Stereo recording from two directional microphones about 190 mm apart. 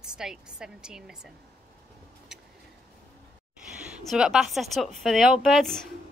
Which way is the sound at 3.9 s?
5° right (ahead or behind).